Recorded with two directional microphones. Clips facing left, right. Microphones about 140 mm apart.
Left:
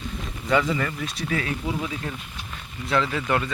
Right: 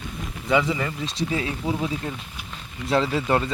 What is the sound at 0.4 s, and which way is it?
Speech, 15° right (ahead or behind).